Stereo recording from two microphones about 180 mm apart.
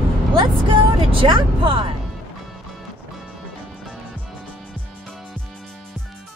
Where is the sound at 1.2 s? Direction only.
30° right (ahead or behind).